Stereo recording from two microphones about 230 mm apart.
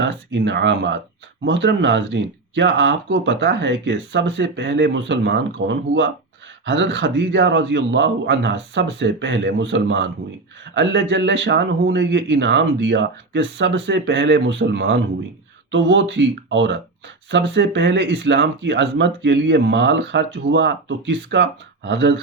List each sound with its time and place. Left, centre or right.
0.0 s speech: right